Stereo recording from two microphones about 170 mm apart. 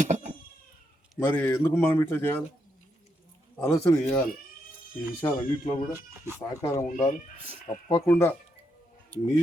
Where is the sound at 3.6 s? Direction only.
20° left (ahead or behind).